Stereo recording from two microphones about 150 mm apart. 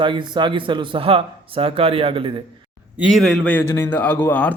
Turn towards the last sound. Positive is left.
turn(degrees=10)  # may be behind; listen again after turning